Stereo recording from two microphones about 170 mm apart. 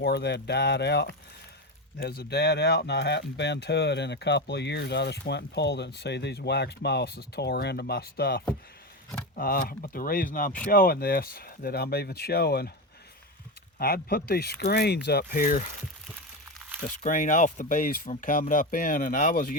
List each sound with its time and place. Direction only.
0.0 s speech: 75° left (ahead or behind)
2.0 s speech: 70° left (ahead or behind)
9.3 s speech: 55° left (ahead or behind)
13.7 s speech: 60° left (ahead or behind)
17.0 s speech: 50° left (ahead or behind)